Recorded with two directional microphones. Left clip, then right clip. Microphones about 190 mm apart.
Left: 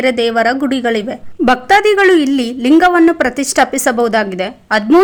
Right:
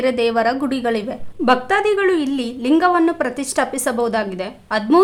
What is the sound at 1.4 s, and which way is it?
A woman's voice, 30° left (ahead or behind).